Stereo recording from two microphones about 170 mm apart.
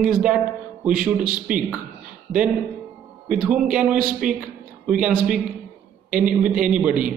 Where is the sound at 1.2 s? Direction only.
55° right (ahead or behind).